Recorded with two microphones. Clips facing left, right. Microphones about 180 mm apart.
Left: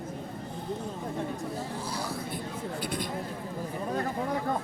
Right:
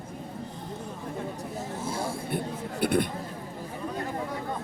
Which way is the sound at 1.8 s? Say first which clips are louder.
Right 3 dB; 25° right (ahead or behind).